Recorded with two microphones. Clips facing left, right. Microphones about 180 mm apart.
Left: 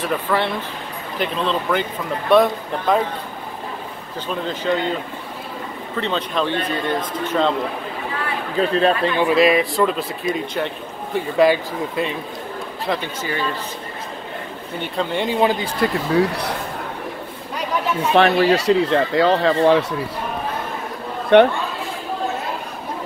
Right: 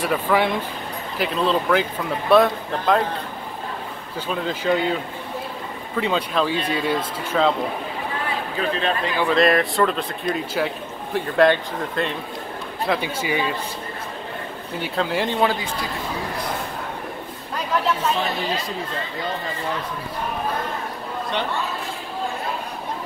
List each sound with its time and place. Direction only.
0.0 s speech: 10° right (ahead or behind)
4.3 s speech: 5° right (ahead or behind)
5.9 s speech: 10° right (ahead or behind)
8.5 s speech: 35° left (ahead or behind)
9.2 s speech: 5° left (ahead or behind)
12.8 s speech: 5° right (ahead or behind)
14.8 s speech: 5° right (ahead or behind)
15.8 s speech: 70° left (ahead or behind)
18.1 s speech: 75° left (ahead or behind)
21.3 s speech: 60° left (ahead or behind)